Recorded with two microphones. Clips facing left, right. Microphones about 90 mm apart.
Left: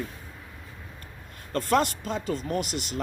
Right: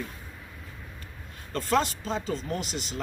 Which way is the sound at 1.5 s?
55° left (ahead or behind).